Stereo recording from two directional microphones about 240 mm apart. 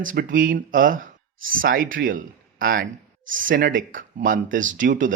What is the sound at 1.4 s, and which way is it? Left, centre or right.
Speech, right.